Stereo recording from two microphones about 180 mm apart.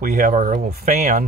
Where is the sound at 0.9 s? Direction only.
40° right (ahead or behind).